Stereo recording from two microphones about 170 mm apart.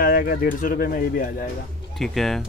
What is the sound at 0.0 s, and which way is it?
Speech, 60° left (ahead or behind).